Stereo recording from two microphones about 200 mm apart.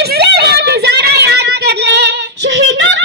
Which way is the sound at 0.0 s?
55° right (ahead or behind).